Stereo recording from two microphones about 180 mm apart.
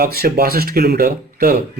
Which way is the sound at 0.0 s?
55° right (ahead or behind).